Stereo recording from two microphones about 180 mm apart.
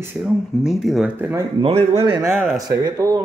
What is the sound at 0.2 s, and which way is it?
Speech, centre (ahead or behind).